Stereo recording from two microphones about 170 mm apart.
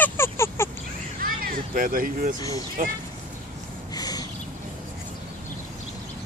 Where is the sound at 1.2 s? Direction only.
55° right (ahead or behind).